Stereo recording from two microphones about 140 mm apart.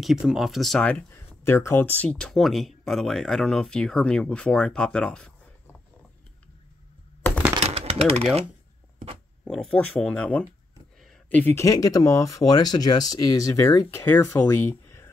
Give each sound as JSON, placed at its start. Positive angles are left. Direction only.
{"t": 0.0, "sound": "speech", "side_deg": 0}
{"t": 7.7, "sound": "typewriter", "side_deg": -45}
{"t": 9.4, "sound": "speech", "side_deg": 5}